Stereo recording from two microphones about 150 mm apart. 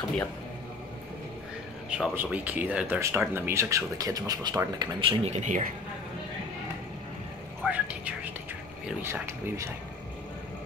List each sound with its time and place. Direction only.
1.9 s speech: 10° right (ahead or behind); by 5.1 s 30° right (ahead or behind)
5.2 s speech: 50° right (ahead or behind)
7.6 s speech: 10° right (ahead or behind)